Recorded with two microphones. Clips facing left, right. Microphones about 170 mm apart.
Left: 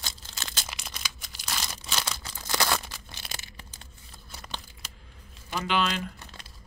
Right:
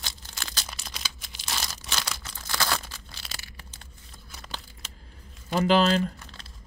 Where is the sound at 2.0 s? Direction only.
20° left (ahead or behind).